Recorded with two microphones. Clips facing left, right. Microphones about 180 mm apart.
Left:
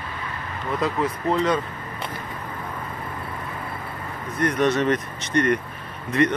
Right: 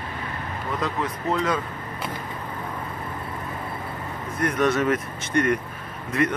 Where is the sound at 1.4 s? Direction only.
Centre (ahead or behind).